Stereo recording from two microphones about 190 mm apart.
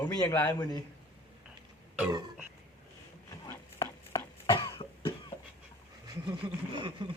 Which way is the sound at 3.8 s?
30° left (ahead or behind).